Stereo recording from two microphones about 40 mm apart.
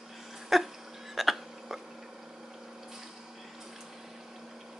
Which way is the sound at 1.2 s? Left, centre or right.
Centre.